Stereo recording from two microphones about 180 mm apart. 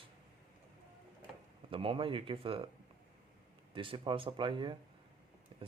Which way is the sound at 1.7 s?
30° right (ahead or behind).